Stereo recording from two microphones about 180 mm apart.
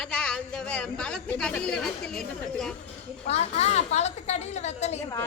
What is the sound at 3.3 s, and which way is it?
A woman's voice, 35° left (ahead or behind).